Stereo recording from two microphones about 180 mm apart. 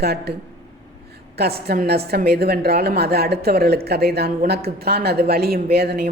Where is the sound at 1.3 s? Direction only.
60° right (ahead or behind).